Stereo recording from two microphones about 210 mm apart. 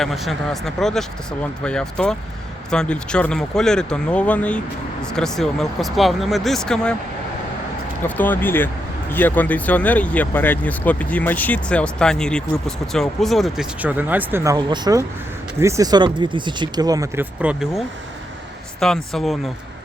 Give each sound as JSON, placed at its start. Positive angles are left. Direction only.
{"t": 0.0, "sound": "speech", "side_deg": 0}
{"t": 8.0, "sound": "speech", "side_deg": 10}